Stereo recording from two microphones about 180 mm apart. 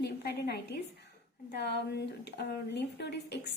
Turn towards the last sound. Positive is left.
turn(degrees=70)  # may be behind; listen again after turning